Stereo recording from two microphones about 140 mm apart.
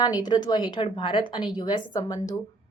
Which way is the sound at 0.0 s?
30° left (ahead or behind).